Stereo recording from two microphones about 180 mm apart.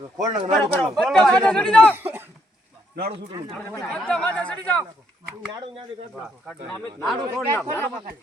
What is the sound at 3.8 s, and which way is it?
Speech, 5° left (ahead or behind).